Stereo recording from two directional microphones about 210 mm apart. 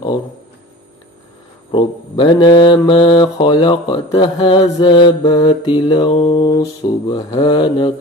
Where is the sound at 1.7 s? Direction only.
20° left (ahead or behind).